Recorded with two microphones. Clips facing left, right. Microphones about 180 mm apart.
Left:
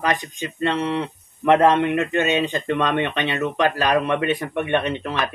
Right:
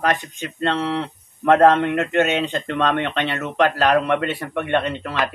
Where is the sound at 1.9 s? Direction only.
60° right (ahead or behind).